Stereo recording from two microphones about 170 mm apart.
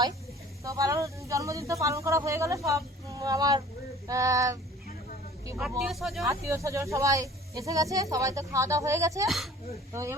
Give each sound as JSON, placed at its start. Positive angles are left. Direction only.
{"t": 0.6, "sound": "speech", "side_deg": -20}
{"t": 5.8, "sound": "speech", "side_deg": 0}
{"t": 6.2, "sound": "speech", "side_deg": -15}